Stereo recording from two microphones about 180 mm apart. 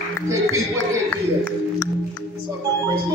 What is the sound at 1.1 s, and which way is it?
Music, 10° left (ahead or behind).